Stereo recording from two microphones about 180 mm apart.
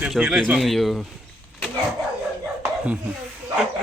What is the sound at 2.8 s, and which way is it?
Speech, 5° right (ahead or behind).